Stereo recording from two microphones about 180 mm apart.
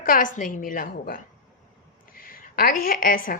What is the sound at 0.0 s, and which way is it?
A woman's voice, 50° left (ahead or behind).